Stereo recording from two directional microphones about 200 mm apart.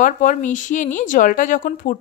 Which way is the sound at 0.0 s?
40° left (ahead or behind).